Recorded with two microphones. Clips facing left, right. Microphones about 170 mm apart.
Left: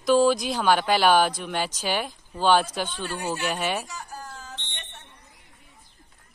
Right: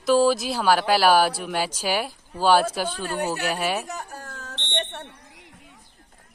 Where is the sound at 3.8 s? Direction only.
60° right (ahead or behind).